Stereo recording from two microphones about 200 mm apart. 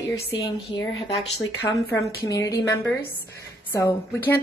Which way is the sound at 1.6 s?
10° left (ahead or behind).